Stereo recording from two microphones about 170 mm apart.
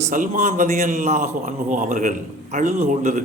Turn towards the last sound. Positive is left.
turn(degrees=-45)  # may be behind; listen again after turning